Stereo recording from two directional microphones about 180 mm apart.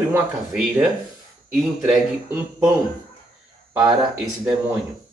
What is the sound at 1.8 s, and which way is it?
Speech, 10° right (ahead or behind).